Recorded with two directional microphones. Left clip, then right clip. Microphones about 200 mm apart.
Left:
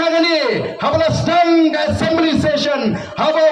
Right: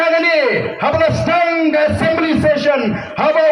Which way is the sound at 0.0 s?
35° right (ahead or behind).